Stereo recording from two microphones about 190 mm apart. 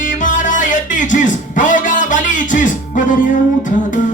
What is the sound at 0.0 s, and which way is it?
Music, 40° left (ahead or behind).